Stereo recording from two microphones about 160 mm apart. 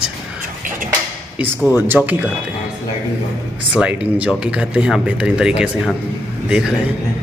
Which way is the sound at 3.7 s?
10° right (ahead or behind).